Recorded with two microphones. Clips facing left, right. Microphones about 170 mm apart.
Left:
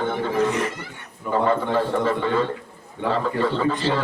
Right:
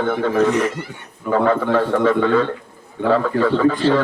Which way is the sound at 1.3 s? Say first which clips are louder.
Right 4 dB; 70° right (ahead or behind).